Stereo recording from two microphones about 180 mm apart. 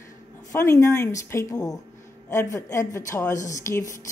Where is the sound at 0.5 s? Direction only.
15° left (ahead or behind).